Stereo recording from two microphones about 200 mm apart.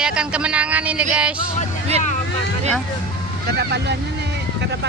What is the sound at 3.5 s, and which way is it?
Speech, 55° right (ahead or behind).